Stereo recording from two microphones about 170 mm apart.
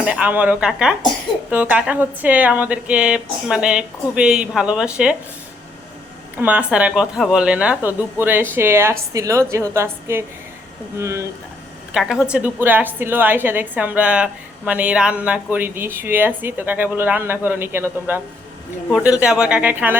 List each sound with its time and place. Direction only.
0.0 s a woman's voice: 10° right (ahead or behind)
6.3 s a woman's voice: 10° right (ahead or behind)
11.9 s a woman's voice: 5° right (ahead or behind)